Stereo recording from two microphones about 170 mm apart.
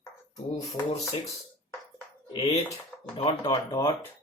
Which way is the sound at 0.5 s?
40° left (ahead or behind).